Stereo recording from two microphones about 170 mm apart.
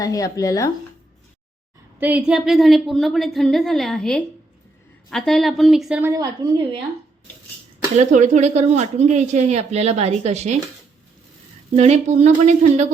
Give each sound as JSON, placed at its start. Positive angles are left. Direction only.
{"t": 0.0, "sound": "speech", "side_deg": 20}
{"t": 2.0, "sound": "a woman's voice", "side_deg": -10}
{"t": 6.0, "sound": "a woman's voice", "side_deg": -20}
{"t": 7.9, "sound": "a woman's voice", "side_deg": -45}
{"t": 11.7, "sound": "a woman's voice", "side_deg": -40}